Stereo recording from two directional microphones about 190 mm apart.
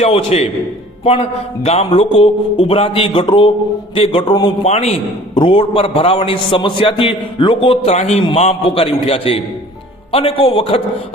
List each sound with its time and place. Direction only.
0.0 s a man's voice: 30° left (ahead or behind)